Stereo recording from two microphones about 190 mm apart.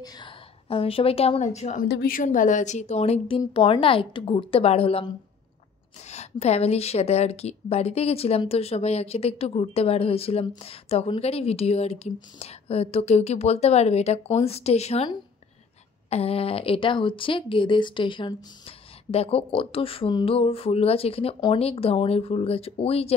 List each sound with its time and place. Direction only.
0.0 s a woman's voice: 25° left (ahead or behind)
1.9 s a woman's voice: 55° left (ahead or behind); by 15.0 s 35° left (ahead or behind)
16.1 s speech: 30° left (ahead or behind)